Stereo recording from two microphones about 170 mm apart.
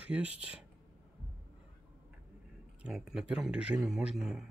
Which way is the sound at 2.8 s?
5° right (ahead or behind).